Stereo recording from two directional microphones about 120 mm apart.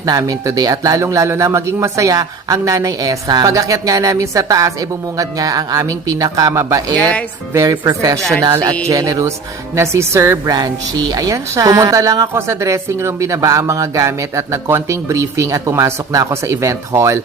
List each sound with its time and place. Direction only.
0.0 s a woman's voice: 30° right (ahead or behind)
6.9 s speech: 10° left (ahead or behind)
7.5 s a woman's voice: 30° right (ahead or behind)